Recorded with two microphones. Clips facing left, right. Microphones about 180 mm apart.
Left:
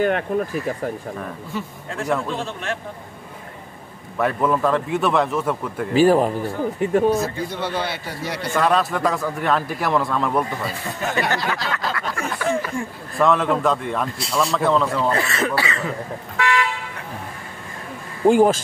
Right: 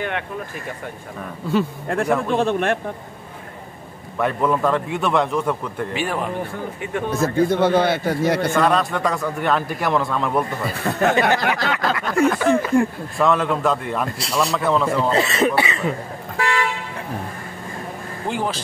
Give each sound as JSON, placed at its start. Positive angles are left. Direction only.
{"t": 1.5, "sound": "speech", "side_deg": -65}
{"t": 4.2, "sound": "a man's voice", "side_deg": 0}
{"t": 5.9, "sound": "a man's voice", "side_deg": 35}
{"t": 7.2, "sound": "a man's voice", "side_deg": -50}
{"t": 8.5, "sound": "a man's voice", "side_deg": 0}
{"t": 10.8, "sound": "speech", "side_deg": -65}
{"t": 11.1, "sound": "speech", "side_deg": -20}
{"t": 11.6, "sound": "a sound", "side_deg": -65}
{"t": 12.1, "sound": "speech", "side_deg": -60}
{"t": 13.2, "sound": "a man's voice", "side_deg": 0}
{"t": 15.0, "sound": "speech", "side_deg": -20}
{"t": 16.3, "sound": "car", "side_deg": -35}
{"t": 18.2, "sound": "speech", "side_deg": 45}